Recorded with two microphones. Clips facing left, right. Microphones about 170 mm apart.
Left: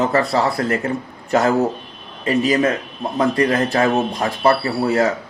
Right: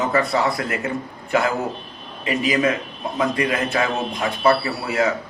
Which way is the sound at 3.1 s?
40° left (ahead or behind).